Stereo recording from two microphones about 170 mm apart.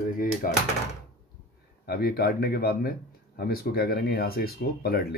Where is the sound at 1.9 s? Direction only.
65° left (ahead or behind).